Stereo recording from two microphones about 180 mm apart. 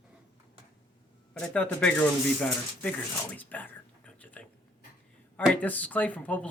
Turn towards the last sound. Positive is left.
turn(degrees=10)  # may be behind; listen again after turning